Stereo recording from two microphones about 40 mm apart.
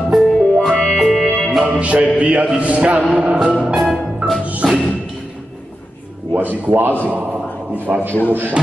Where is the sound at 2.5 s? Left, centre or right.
Right.